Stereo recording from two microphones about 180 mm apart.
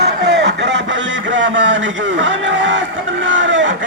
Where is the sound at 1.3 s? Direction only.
90° right.